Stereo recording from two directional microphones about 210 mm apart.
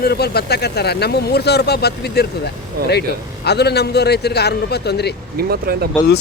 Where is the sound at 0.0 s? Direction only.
50° left (ahead or behind).